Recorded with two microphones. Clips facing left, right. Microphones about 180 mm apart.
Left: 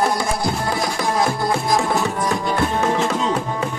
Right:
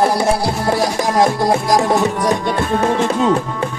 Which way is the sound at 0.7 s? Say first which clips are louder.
Right 5 dB; 80° right.